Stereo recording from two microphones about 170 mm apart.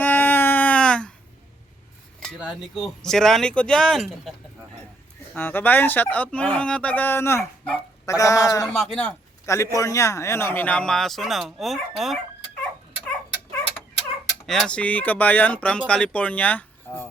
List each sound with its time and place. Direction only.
0.0 s baby cry: 10° left (ahead or behind)
2.2 s speech: 5° right (ahead or behind)
5.3 s speech: 10° left (ahead or behind)
8.0 s a sound: 20° left (ahead or behind)
8.6 s a man's voice: centre (ahead or behind)
14.4 s speech: centre (ahead or behind)